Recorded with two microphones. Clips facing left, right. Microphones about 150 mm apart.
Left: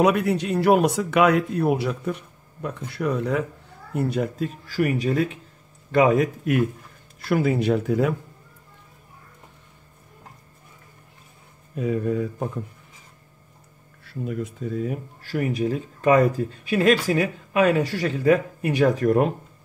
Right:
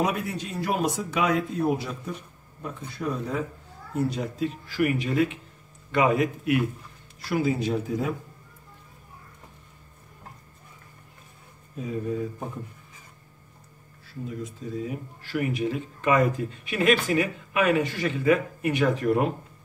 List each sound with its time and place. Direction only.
0.0 s speech: 70° left (ahead or behind)
3.9 s speech: 55° left (ahead or behind)
7.2 s speech: 60° left (ahead or behind)
11.8 s speech: 70° left (ahead or behind)
14.0 s speech: 60° left (ahead or behind); by 19.3 s 40° left (ahead or behind)